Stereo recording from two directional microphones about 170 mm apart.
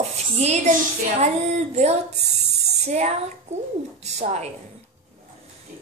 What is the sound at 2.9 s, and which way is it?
Speech, 40° right (ahead or behind).